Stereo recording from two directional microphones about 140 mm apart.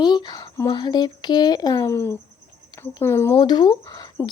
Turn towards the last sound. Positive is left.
turn(degrees=30)  # may be behind; listen again after turning